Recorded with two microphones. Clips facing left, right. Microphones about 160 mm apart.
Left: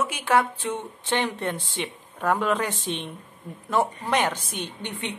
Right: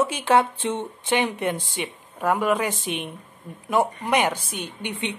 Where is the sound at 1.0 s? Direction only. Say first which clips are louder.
Right 3 dB; 15° right (ahead or behind).